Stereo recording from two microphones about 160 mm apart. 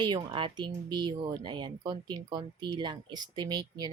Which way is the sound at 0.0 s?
30° right (ahead or behind).